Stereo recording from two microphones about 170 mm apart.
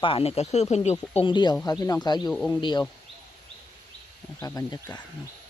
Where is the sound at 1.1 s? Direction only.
30° left (ahead or behind).